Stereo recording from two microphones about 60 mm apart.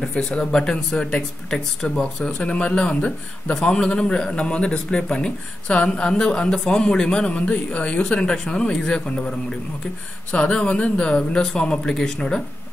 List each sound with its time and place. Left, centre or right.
0.0 s a man's voice: centre
2.2 s a man's voice: centre
10.3 s a man's voice: centre